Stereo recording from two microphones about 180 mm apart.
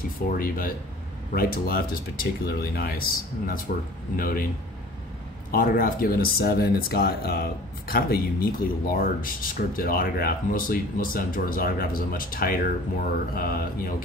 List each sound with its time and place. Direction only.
0.3 s speech: 50° left (ahead or behind)
5.5 s speech: 55° left (ahead or behind)